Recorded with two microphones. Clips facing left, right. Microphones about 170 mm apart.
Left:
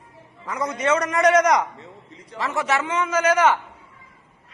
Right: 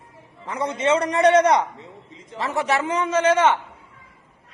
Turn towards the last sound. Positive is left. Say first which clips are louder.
# right 1 dB
turn(degrees=-25)  # may be behind; listen again after turning